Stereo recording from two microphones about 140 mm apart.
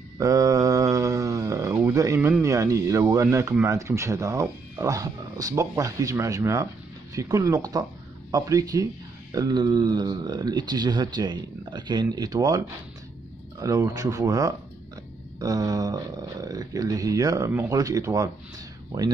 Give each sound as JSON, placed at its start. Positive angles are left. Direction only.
{"t": 0.2, "sound": "mantra", "side_deg": -25}
{"t": 1.8, "sound": "a sound", "side_deg": -20}
{"t": 2.4, "sound": "speech", "side_deg": -25}